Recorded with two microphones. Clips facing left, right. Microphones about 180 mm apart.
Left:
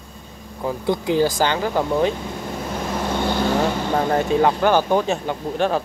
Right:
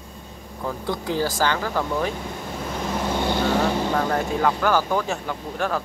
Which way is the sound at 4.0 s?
25° left (ahead or behind).